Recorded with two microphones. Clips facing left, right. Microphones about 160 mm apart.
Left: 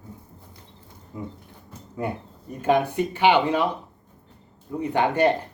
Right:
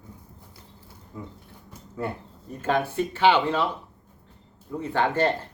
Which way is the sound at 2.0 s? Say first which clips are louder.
Left 2 dB; 15° left (ahead or behind).